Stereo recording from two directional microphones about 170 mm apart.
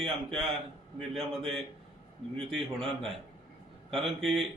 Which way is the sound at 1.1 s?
Centre (ahead or behind).